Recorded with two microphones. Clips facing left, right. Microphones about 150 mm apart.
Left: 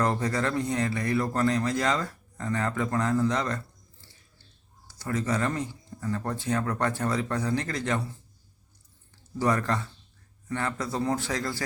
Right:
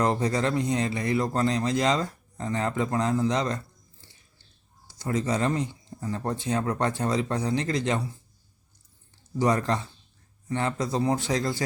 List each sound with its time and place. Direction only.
0.0 s speech: 20° right (ahead or behind)
4.9 s speech: 20° right (ahead or behind)
9.4 s speech: 20° right (ahead or behind)